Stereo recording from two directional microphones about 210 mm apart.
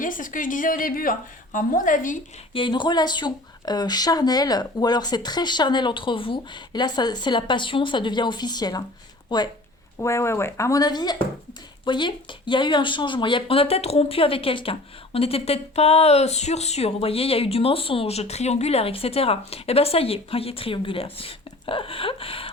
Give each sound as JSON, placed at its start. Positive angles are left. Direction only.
{"t": 0.0, "sound": "a woman's voice", "side_deg": 40}
{"t": 2.5, "sound": "speech", "side_deg": 25}